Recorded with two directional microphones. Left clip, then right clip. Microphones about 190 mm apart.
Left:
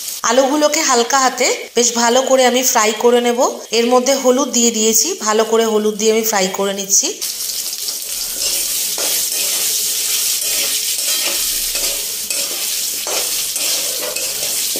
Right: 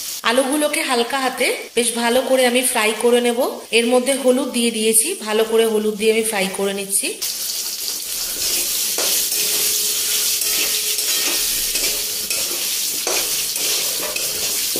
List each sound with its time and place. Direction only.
0.2 s a woman's voice: 10° left (ahead or behind)